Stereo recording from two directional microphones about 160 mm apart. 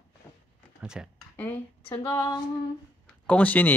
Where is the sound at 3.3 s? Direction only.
10° left (ahead or behind).